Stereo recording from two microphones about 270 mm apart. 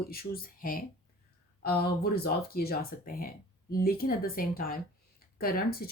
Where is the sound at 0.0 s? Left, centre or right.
Left.